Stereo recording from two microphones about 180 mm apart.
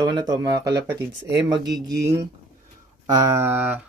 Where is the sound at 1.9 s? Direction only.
20° right (ahead or behind).